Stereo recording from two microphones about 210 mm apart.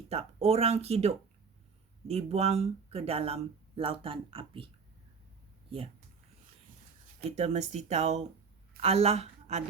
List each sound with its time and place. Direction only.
0.1 s speech: 30° right (ahead or behind)
7.2 s a woman's voice: 30° right (ahead or behind)